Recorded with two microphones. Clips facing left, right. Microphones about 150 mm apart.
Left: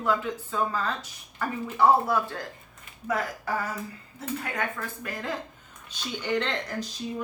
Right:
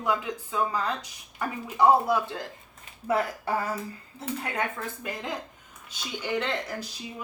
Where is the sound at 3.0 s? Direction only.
30° right (ahead or behind).